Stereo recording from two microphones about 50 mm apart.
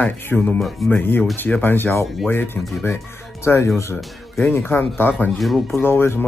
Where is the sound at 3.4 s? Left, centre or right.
Left.